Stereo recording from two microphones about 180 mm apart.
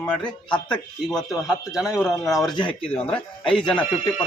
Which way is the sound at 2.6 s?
30° left (ahead or behind).